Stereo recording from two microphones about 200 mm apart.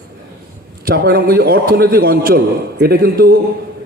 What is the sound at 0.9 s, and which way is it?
A man's voice, 50° right (ahead or behind).